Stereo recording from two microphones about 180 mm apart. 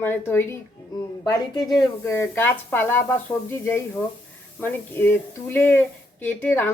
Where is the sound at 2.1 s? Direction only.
10° left (ahead or behind).